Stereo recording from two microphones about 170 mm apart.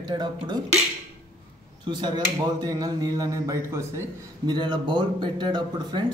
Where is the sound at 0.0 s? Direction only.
25° right (ahead or behind).